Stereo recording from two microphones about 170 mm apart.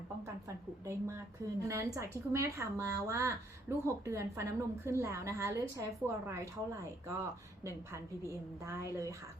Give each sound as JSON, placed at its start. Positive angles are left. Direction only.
{"t": 0.4, "sound": "speech", "side_deg": -15}